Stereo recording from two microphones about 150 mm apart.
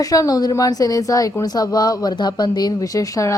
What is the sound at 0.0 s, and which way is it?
A woman's voice, 25° left (ahead or behind).